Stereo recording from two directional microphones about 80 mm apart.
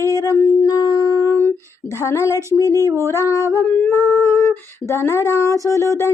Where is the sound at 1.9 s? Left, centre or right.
Left.